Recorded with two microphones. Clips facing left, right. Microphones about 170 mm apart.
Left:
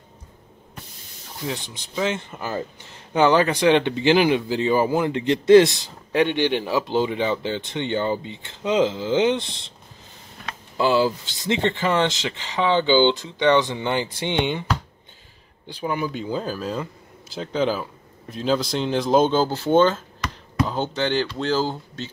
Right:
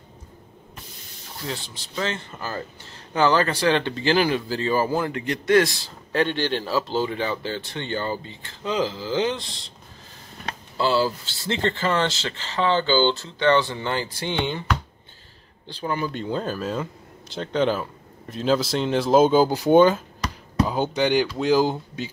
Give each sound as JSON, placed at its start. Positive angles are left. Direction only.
{"t": 1.4, "sound": "speech", "side_deg": 15}
{"t": 10.8, "sound": "speech", "side_deg": 15}
{"t": 15.7, "sound": "speech", "side_deg": 10}
{"t": 20.2, "sound": "a sound", "side_deg": -35}
{"t": 20.6, "sound": "speech", "side_deg": -10}